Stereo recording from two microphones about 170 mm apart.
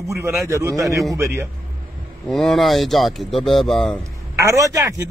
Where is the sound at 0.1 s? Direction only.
15° right (ahead or behind).